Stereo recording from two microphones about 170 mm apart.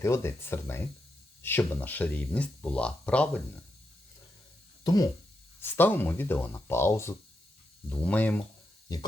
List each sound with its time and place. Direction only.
0.0 s speech: 15° left (ahead or behind)
4.8 s speech: 25° left (ahead or behind)
5.6 s speech: 10° left (ahead or behind)
8.9 s speech: 20° left (ahead or behind)